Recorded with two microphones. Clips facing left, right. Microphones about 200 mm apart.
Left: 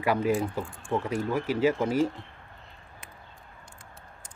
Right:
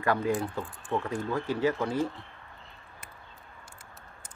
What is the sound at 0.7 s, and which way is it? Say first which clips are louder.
Speech: left 2 dB; centre (ahead or behind).